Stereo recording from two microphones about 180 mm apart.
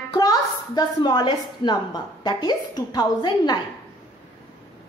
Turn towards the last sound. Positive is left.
turn(degrees=25)  # may be behind; listen again after turning